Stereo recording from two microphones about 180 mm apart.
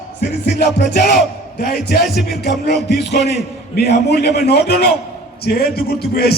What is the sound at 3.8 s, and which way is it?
A man's voice, 65° left (ahead or behind).